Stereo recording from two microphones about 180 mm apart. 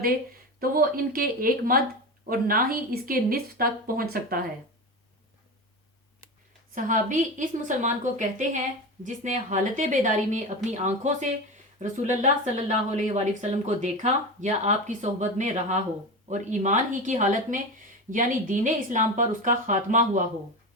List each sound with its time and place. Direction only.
0.6 s a woman's voice: 55° right (ahead or behind)
6.7 s a woman's voice: 45° right (ahead or behind)